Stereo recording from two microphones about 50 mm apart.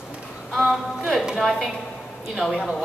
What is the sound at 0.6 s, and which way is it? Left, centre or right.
Speech, centre.